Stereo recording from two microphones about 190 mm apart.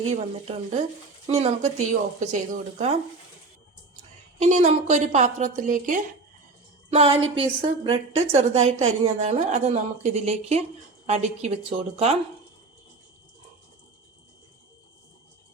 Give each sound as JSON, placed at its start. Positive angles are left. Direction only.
{"t": 0.1, "sound": "a woman's voice", "side_deg": -35}
{"t": 4.4, "sound": "a woman's voice", "side_deg": -40}
{"t": 6.9, "sound": "a woman's voice", "side_deg": -30}